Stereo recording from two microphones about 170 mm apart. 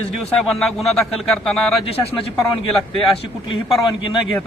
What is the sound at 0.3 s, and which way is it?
A man's voice, centre (ahead or behind).